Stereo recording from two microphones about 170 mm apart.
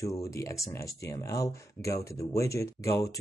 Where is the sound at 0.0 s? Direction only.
20° left (ahead or behind).